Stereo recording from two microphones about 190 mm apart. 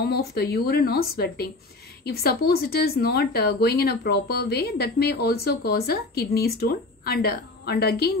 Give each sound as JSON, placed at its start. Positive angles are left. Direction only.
{"t": 0.0, "sound": "a woman's voice", "side_deg": 55}